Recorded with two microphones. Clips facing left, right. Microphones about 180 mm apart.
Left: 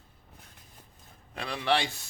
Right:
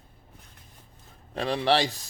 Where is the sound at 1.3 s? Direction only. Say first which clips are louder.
Right 5 dB; 35° right (ahead or behind).